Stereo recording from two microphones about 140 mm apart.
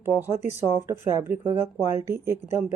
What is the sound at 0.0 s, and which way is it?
Speech, 15° right (ahead or behind).